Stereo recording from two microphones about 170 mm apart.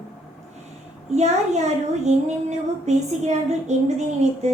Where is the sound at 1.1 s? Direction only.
40° right (ahead or behind).